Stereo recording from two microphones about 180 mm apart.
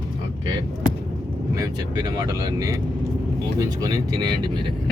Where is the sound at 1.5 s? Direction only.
20° right (ahead or behind).